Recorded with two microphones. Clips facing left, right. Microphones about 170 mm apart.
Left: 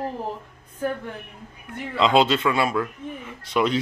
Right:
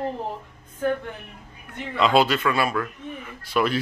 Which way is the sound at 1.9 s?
20° left (ahead or behind).